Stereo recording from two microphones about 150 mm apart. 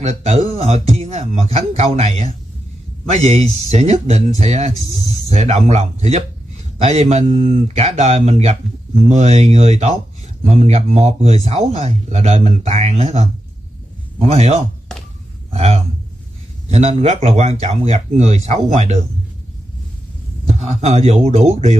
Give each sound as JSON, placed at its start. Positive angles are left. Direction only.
{"t": 0.0, "sound": "speech", "side_deg": -45}
{"t": 20.4, "sound": "speech", "side_deg": -50}